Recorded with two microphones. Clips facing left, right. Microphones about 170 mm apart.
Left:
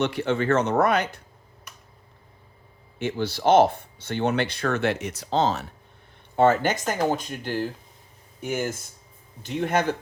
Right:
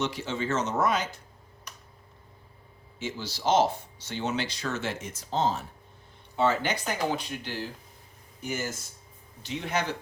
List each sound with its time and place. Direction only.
0.0 s speech: 60° left (ahead or behind)
3.0 s speech: 60° left (ahead or behind); by 5.6 s 75° left (ahead or behind)
6.3 s speech: 50° left (ahead or behind)